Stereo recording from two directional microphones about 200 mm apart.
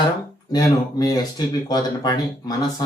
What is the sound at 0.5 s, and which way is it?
A man's voice, 20° left (ahead or behind).